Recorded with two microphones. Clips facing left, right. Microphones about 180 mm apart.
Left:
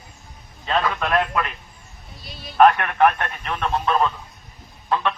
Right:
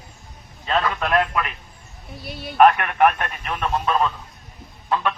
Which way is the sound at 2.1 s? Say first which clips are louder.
Right 7 dB; 65° right (ahead or behind).